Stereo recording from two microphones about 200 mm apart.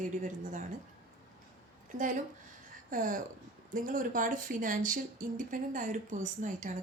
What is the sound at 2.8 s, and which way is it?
Speech, 40° right (ahead or behind).